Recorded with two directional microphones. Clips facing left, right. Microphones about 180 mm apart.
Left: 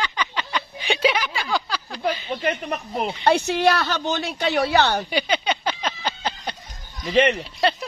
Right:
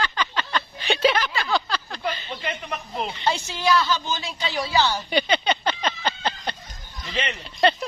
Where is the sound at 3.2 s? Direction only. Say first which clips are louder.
Left 6 dB; 65° left (ahead or behind).